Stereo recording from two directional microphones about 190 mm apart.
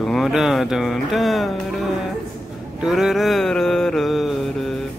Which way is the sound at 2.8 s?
Centre (ahead or behind).